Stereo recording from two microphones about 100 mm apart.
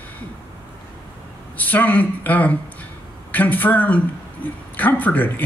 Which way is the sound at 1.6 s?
15° left (ahead or behind).